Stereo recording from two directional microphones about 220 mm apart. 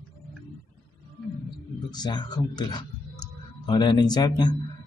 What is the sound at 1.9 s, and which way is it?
A man's voice, 20° left (ahead or behind).